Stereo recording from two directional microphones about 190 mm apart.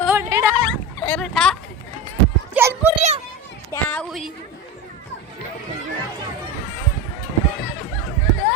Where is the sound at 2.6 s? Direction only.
10° right (ahead or behind).